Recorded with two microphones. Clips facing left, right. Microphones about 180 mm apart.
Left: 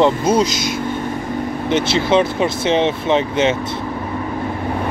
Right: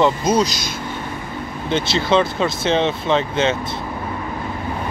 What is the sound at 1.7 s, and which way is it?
Speech, 20° left (ahead or behind).